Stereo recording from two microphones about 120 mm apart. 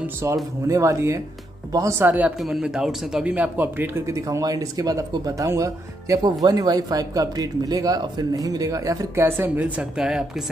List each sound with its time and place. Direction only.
0.0 s speech: 20° right (ahead or behind)
2.3 s speech: centre (ahead or behind)